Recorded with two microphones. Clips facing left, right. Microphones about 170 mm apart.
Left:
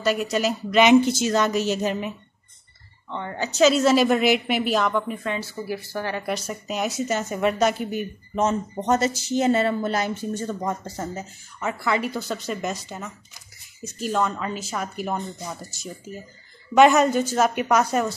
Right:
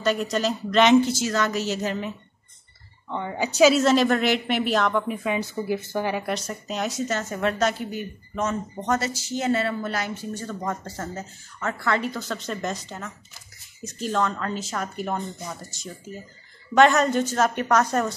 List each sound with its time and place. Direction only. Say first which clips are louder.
0.0 s speech: left 1 dB; 5° left (ahead or behind)
3.1 s a woman's voice: right 2 dB; 10° right (ahead or behind)
3.8 s a woman's voice: left 2 dB; 5° left (ahead or behind); by 6.2 s 15° right (ahead or behind)
6.2 s a woman's voice: left 1 dB; 5° left (ahead or behind)